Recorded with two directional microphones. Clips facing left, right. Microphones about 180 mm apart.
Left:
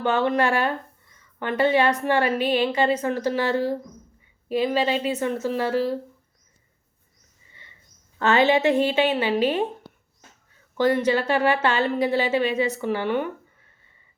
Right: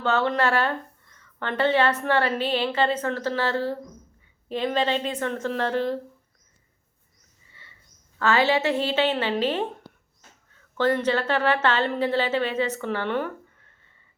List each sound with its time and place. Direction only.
0.0 s speech: 15° left (ahead or behind)
8.2 s speech: 20° left (ahead or behind)
10.8 s speech: 10° left (ahead or behind)